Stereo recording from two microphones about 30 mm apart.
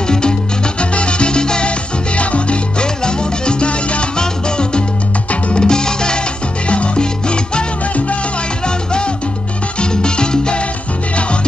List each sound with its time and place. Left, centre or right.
0.1 s salsa music: left
0.7 s salsa music: left
2.1 s salsa music: left
8.6 s music: left
9.8 s salsa music: left